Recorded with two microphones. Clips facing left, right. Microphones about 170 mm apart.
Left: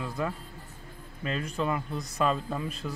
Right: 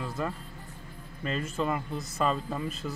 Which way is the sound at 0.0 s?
Centre (ahead or behind).